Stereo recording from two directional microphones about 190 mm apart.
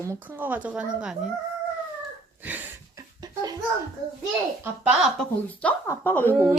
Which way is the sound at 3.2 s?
20° right (ahead or behind).